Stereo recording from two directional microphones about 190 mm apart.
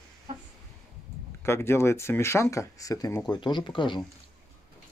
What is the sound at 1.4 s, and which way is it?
Speech, 15° left (ahead or behind).